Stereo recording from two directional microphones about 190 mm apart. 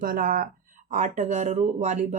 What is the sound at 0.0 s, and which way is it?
Speech, 45° right (ahead or behind).